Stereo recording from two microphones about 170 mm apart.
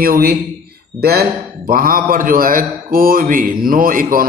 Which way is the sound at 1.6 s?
55° right (ahead or behind).